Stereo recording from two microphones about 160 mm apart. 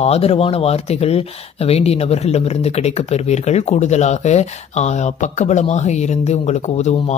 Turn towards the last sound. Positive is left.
turn(degrees=45)  # may be behind; listen again after turning